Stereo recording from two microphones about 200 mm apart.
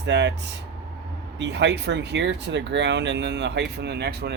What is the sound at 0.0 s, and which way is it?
Speech, 60° right (ahead or behind).